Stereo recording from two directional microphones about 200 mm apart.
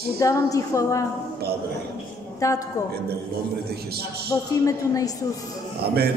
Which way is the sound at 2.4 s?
15° left (ahead or behind).